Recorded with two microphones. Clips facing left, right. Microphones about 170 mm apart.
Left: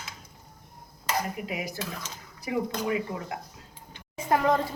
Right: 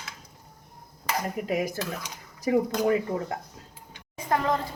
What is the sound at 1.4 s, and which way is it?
Speech, 45° right (ahead or behind).